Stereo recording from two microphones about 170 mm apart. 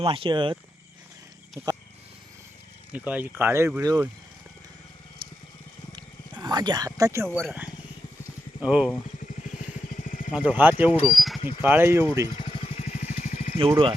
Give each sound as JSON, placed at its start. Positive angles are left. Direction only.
{"t": 0.0, "sound": "speech", "side_deg": -30}
{"t": 1.6, "sound": "speech", "side_deg": -15}
{"t": 2.9, "sound": "speech", "side_deg": -10}
{"t": 5.2, "sound": "vehicle", "side_deg": -30}
{"t": 6.0, "sound": "wild animals", "side_deg": -25}
{"t": 7.4, "sound": "speech", "side_deg": -10}
{"t": 9.2, "sound": "vehicle", "side_deg": 50}
{"t": 10.3, "sound": "speech", "side_deg": -10}
{"t": 11.1, "sound": "a sound", "side_deg": 0}
{"t": 11.6, "sound": "speech", "side_deg": -15}
{"t": 12.4, "sound": "vehicle", "side_deg": 30}
{"t": 13.6, "sound": "speech", "side_deg": -30}